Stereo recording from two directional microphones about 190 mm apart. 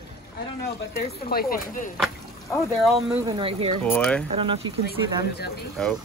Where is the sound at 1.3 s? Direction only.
50° left (ahead or behind).